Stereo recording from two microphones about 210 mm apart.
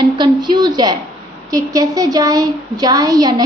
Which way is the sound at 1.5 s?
15° right (ahead or behind).